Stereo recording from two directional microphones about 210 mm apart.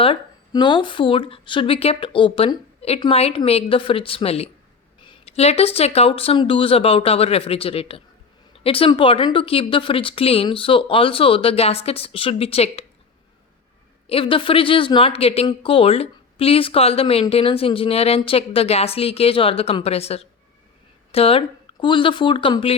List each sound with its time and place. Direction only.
0.0 s speech: 25° left (ahead or behind)
14.1 s speech: 25° left (ahead or behind)